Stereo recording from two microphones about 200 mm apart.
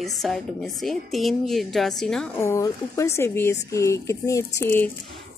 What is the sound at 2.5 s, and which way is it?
Speech, 15° left (ahead or behind).